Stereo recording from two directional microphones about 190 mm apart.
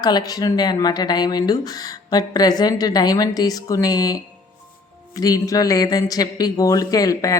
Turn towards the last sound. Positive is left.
turn(degrees=20)  # may be behind; listen again after turning